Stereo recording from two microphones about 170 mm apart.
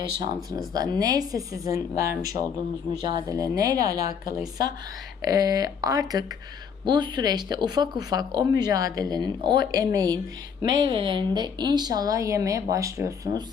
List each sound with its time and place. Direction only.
0.7 s speech: 25° right (ahead or behind)
3.2 s speech: 20° right (ahead or behind)